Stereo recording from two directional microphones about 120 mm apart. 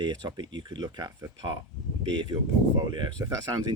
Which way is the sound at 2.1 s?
40° right (ahead or behind).